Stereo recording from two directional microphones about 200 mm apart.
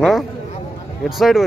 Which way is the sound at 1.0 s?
Centre (ahead or behind).